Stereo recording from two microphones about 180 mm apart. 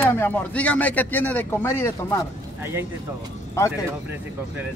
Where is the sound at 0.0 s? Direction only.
10° left (ahead or behind).